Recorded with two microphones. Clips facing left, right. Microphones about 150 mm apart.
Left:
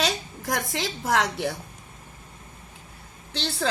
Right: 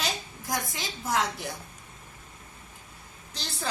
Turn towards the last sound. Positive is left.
turn(degrees=75)  # may be behind; listen again after turning